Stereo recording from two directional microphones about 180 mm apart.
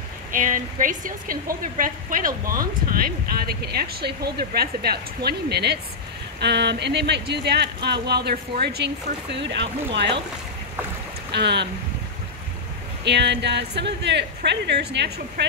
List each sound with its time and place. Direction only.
0.3 s a woman's voice: 45° right (ahead or behind); by 10.2 s 70° right (ahead or behind)
11.3 s speech: 70° right (ahead or behind)
13.0 s speech: 70° right (ahead or behind)